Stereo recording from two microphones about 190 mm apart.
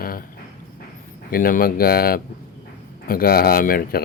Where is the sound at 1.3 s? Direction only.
50° left (ahead or behind).